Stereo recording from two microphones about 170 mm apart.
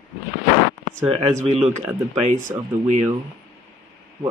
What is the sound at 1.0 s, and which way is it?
Speech, 35° right (ahead or behind).